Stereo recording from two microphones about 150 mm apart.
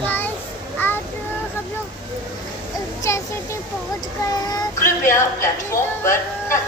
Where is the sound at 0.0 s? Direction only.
10° left (ahead or behind).